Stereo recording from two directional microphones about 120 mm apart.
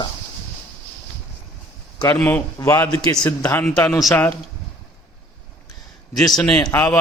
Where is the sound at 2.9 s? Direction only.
35° left (ahead or behind).